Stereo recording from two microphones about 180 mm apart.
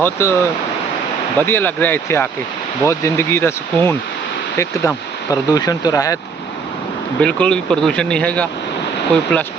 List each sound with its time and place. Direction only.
0.0 s speech: 15° left (ahead or behind)
1.4 s speech: 10° left (ahead or behind)
7.2 s speech: 5° left (ahead or behind)